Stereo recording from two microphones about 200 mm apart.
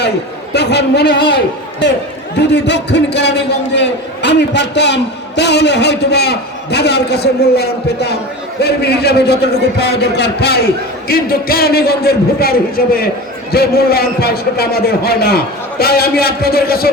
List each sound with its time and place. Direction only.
0.5 s a man's voice: 55° left (ahead or behind)
2.3 s a man's voice: 60° left (ahead or behind)